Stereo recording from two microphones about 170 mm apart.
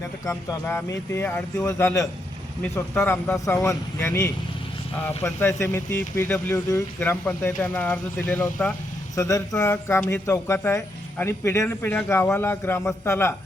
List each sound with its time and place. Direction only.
0.3 s speech: 15° left (ahead or behind)